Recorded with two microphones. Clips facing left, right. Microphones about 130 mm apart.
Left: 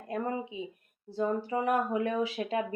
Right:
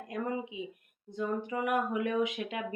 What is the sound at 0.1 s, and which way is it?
Speech, 35° left (ahead or behind).